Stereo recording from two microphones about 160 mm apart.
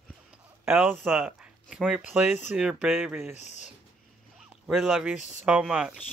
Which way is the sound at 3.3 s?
45° left (ahead or behind).